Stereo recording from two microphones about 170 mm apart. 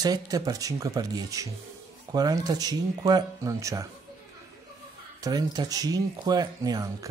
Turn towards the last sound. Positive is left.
turn(degrees=-20)  # may be behind; listen again after turning